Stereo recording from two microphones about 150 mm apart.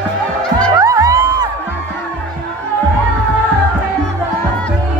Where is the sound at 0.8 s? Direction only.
25° right (ahead or behind).